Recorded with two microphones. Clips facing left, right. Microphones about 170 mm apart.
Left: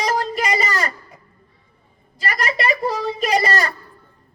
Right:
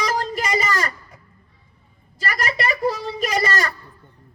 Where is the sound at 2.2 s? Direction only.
30° left (ahead or behind).